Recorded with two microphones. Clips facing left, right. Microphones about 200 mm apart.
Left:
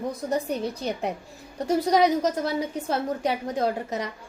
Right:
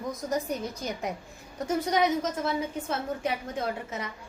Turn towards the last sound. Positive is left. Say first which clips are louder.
# left 6 dB
turn(degrees=35)  # may be behind; listen again after turning